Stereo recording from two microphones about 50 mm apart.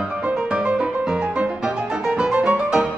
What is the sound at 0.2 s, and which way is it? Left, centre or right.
Music, centre.